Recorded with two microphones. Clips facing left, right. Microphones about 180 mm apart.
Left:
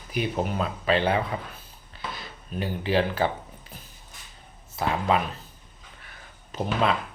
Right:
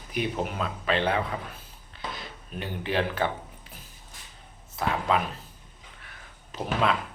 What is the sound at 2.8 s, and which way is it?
Speech, 30° left (ahead or behind).